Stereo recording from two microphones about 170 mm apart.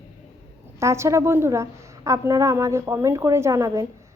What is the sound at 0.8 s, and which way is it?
A woman's voice, 15° right (ahead or behind).